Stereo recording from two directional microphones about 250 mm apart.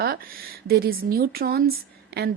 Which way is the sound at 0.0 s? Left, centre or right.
Right.